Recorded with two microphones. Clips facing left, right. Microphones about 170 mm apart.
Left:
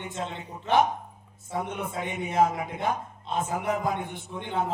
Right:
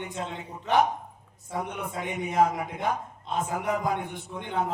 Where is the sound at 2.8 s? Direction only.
15° right (ahead or behind).